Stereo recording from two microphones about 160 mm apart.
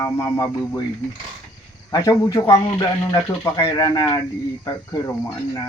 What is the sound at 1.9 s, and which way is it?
Speech, 25° left (ahead or behind).